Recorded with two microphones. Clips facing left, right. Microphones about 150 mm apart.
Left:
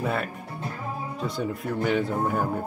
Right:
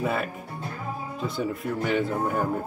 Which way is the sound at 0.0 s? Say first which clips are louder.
Right 1 dB; centre (ahead or behind).